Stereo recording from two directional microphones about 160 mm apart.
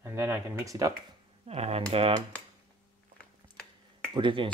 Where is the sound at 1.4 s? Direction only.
40° right (ahead or behind).